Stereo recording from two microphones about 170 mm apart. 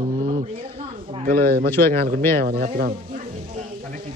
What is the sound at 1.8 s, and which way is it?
Speech, 60° right (ahead or behind).